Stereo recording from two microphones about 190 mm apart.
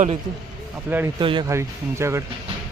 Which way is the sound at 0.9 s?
10° right (ahead or behind).